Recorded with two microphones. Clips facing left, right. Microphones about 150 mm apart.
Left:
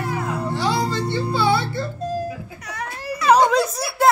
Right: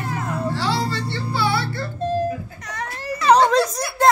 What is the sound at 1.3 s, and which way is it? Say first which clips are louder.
Music: left 2 dB; 20° left (ahead or behind).